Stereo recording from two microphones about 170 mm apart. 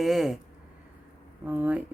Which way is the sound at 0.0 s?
Centre (ahead or behind).